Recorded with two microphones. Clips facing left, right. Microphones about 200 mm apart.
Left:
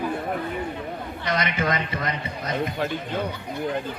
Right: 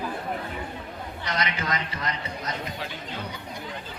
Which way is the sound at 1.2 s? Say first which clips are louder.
Left 5 dB; 55° left (ahead or behind).